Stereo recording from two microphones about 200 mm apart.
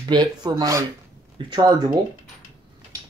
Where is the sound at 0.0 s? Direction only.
20° right (ahead or behind).